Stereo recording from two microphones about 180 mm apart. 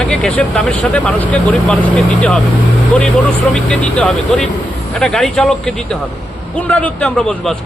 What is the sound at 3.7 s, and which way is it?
A man's voice, 5° left (ahead or behind).